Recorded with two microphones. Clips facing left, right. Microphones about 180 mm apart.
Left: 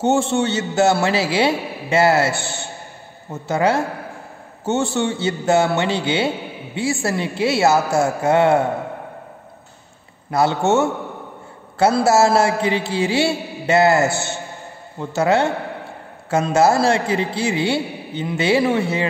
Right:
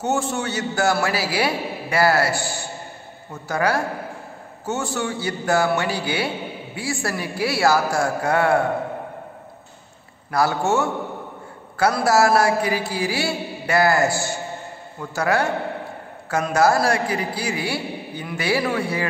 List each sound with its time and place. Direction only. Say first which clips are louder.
0.0 s a man's voice: left 6 dB; 25° left (ahead or behind)
10.3 s a man's voice: left 3 dB; 25° left (ahead or behind)